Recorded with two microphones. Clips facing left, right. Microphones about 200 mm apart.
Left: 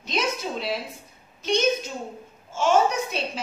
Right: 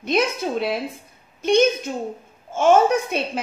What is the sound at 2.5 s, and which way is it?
Child singing, 55° right (ahead or behind).